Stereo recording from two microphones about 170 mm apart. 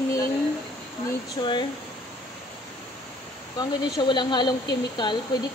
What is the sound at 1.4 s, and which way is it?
Speech, 30° left (ahead or behind).